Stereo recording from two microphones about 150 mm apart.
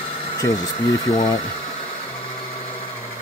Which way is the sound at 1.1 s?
30° left (ahead or behind).